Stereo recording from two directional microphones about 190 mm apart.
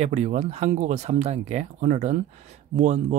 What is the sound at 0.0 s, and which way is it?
Speech, 40° right (ahead or behind).